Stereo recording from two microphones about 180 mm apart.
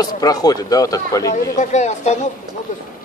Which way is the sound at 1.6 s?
40° left (ahead or behind).